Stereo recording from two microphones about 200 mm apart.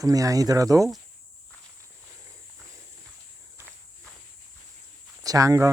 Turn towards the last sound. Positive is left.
turn(degrees=-15)  # may be behind; listen again after turning